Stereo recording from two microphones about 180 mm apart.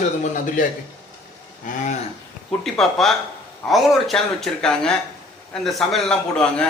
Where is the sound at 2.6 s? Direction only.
Centre (ahead or behind).